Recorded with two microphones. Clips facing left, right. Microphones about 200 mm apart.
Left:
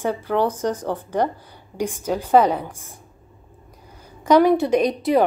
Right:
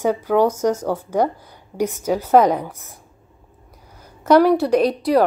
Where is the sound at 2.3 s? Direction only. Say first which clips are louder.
Right 2 dB; 10° right (ahead or behind).